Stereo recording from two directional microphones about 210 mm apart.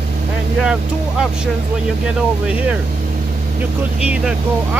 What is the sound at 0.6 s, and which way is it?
Speech, 5° right (ahead or behind).